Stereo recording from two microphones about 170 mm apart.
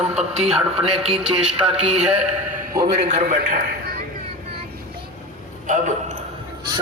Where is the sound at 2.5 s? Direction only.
65° right (ahead or behind).